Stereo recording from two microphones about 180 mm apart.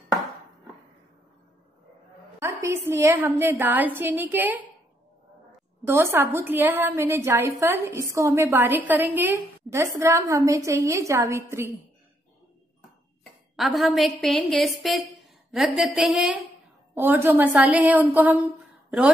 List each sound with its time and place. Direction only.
2.4 s a woman's voice: 15° right (ahead or behind)
5.9 s a woman's voice: 10° right (ahead or behind)
13.6 s a woman's voice: centre (ahead or behind)